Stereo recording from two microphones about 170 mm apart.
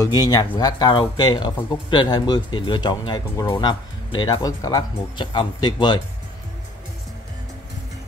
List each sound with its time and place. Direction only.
0.0 s speech: 20° left (ahead or behind)